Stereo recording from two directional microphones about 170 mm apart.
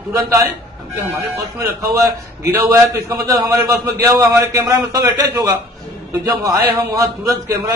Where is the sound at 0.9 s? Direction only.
20° right (ahead or behind).